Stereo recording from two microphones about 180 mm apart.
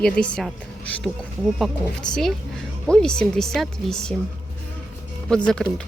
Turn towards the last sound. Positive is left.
turn(degrees=5)  # may be behind; listen again after turning